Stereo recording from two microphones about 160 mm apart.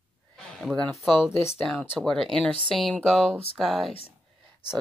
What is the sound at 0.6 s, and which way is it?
Speech, 5° left (ahead or behind).